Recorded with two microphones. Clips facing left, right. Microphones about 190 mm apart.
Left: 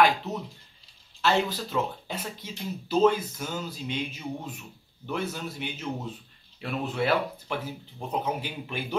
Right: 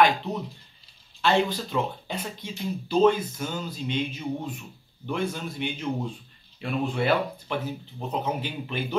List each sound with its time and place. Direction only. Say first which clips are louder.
0.0 s a man's voice: right 1 dB; 5° left (ahead or behind)